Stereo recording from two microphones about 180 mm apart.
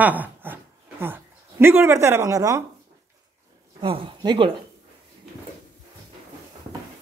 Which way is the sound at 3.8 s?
30° right (ahead or behind).